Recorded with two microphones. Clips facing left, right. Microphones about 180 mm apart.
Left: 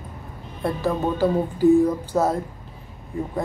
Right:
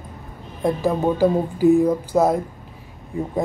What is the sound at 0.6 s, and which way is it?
Speech, 15° right (ahead or behind).